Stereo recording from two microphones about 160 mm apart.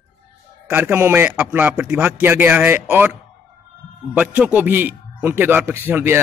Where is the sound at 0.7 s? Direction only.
15° right (ahead or behind).